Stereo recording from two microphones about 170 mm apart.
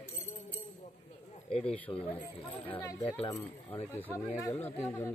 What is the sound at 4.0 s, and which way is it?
Speech, 10° left (ahead or behind).